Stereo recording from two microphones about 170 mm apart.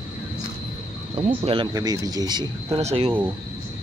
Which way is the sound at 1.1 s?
35° right (ahead or behind).